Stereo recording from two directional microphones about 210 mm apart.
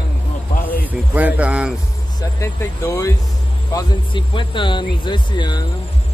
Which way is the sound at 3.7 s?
25° left (ahead or behind).